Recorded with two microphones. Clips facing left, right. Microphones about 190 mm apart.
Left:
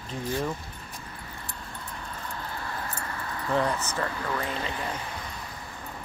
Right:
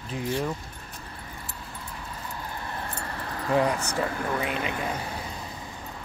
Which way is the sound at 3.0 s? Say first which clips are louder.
Right 1 dB; 35° right (ahead or behind).